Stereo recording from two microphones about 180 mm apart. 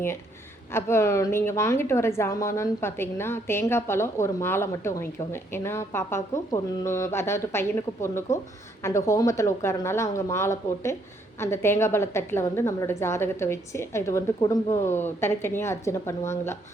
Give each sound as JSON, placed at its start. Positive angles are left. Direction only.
{"t": 0.7, "sound": "a woman's voice", "side_deg": 15}